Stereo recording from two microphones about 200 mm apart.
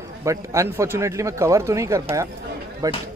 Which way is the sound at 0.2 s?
15° right (ahead or behind).